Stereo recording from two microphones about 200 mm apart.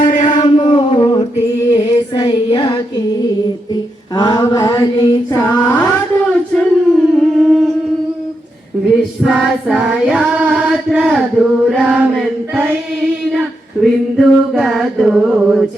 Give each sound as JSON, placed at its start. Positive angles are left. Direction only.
{"t": 0.0, "sound": "a sound", "side_deg": 40}
{"t": 0.6, "sound": "a sound", "side_deg": 25}
{"t": 1.7, "sound": "music", "side_deg": 25}
{"t": 3.7, "sound": "female singing", "side_deg": 20}
{"t": 6.5, "sound": "singing", "side_deg": 0}
{"t": 9.2, "sound": "female singing", "side_deg": 0}
{"t": 13.8, "sound": "chant", "side_deg": 0}